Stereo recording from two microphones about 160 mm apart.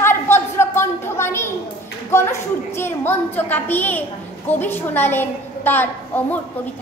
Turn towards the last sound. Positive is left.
turn(degrees=10)  # may be behind; listen again after turning